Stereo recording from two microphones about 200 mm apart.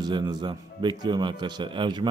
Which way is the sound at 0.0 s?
20° right (ahead or behind).